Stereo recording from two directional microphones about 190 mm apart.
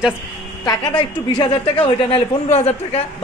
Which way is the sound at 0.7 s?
20° left (ahead or behind).